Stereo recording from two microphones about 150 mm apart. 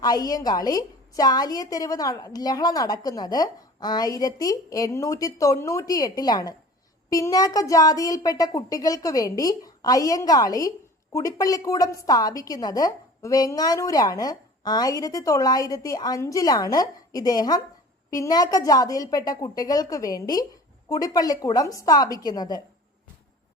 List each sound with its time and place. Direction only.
0.0 s speech: 25° left (ahead or behind)